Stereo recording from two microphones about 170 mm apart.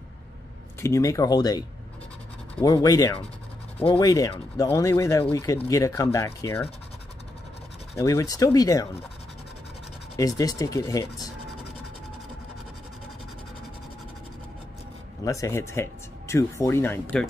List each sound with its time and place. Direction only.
0.7 s speech: 15° left (ahead or behind)
8.0 s speech: 20° left (ahead or behind)
10.1 s speech: 20° left (ahead or behind)
15.2 s speech: 20° left (ahead or behind)